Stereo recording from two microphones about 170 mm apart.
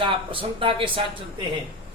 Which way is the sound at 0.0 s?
30° right (ahead or behind).